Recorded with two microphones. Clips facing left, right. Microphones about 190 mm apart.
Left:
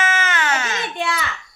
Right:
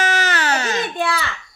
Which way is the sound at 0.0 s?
35° right (ahead or behind).